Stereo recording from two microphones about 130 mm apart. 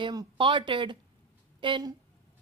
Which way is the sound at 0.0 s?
35° right (ahead or behind).